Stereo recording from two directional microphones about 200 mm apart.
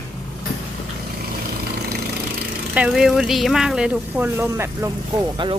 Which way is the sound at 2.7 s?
5° right (ahead or behind).